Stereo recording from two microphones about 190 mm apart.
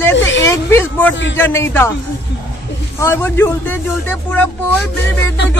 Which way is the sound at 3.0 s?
10° left (ahead or behind).